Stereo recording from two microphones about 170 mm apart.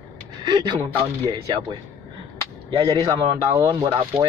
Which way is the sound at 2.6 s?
25° right (ahead or behind).